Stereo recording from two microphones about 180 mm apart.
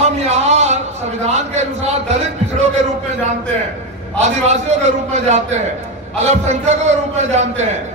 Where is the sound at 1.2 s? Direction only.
40° right (ahead or behind).